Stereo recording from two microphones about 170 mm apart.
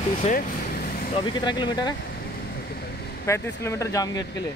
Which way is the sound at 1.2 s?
25° left (ahead or behind).